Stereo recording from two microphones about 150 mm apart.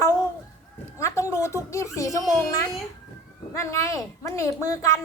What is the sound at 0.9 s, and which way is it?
A woman's voice, 20° left (ahead or behind).